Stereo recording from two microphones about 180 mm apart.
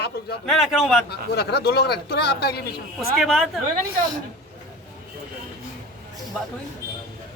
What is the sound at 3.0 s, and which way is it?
Speech, centre (ahead or behind).